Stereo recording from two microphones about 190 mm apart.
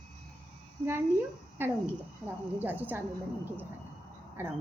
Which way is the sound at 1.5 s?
10° right (ahead or behind).